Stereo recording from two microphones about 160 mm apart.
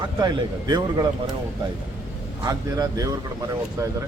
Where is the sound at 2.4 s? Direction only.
20° right (ahead or behind).